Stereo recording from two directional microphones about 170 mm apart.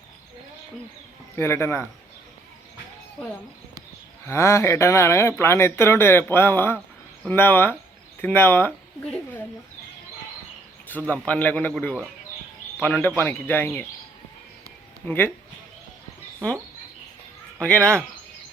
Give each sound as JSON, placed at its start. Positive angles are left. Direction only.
{"t": 1.4, "sound": "speech", "side_deg": 15}
{"t": 3.2, "sound": "speech", "side_deg": 5}
{"t": 4.3, "sound": "speech", "side_deg": 15}
{"t": 10.9, "sound": "speech", "side_deg": 10}
{"t": 15.0, "sound": "speech", "side_deg": 10}
{"t": 17.6, "sound": "speech", "side_deg": 5}